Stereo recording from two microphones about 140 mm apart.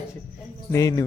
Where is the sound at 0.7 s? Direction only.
25° left (ahead or behind).